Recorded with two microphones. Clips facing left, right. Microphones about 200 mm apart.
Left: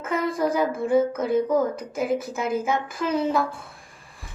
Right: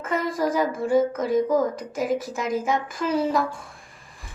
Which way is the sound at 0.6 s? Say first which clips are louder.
Even; 10° left (ahead or behind).